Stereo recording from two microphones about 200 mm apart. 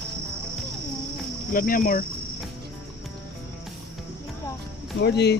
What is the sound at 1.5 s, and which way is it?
Speech, 45° left (ahead or behind).